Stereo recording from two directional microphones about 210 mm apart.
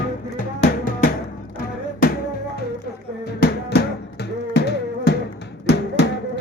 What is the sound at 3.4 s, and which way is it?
Music, 50° left (ahead or behind).